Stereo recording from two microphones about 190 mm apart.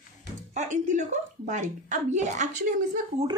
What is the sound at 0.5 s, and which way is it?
A woman's voice, 40° right (ahead or behind).